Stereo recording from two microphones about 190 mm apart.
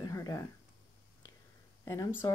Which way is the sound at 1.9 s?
15° left (ahead or behind).